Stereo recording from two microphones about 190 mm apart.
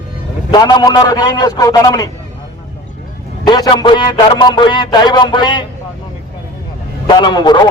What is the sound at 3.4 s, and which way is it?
Speech, 20° left (ahead or behind).